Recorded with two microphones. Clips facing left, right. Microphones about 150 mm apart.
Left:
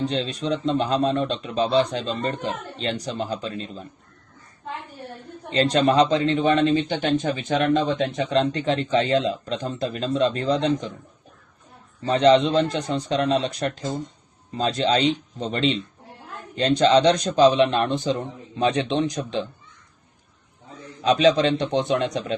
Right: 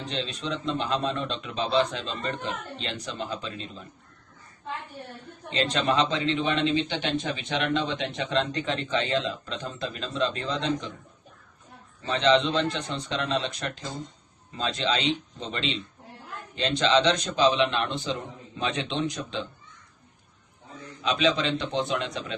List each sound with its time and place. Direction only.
0.0 s speech: 40° left (ahead or behind)
5.5 s speech: 40° left (ahead or behind)
12.0 s speech: 40° left (ahead or behind)
21.0 s speech: 40° left (ahead or behind)